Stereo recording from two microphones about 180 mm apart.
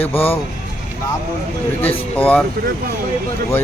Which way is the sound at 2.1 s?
5° left (ahead or behind).